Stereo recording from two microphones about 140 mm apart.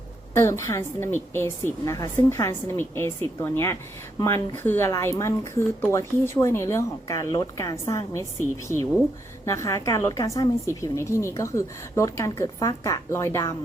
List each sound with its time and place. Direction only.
0.3 s a woman's voice: 20° left (ahead or behind)